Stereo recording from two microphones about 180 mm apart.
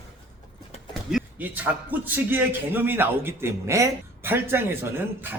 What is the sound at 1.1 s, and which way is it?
A man's voice, 5° right (ahead or behind).